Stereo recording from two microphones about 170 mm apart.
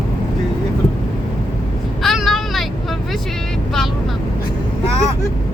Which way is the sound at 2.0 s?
Centre (ahead or behind).